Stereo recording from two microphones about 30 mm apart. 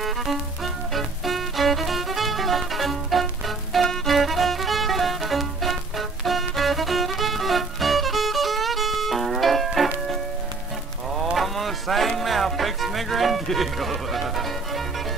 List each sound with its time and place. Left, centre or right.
0.0 s music: centre
11.3 s a sound: centre
12.2 s music: centre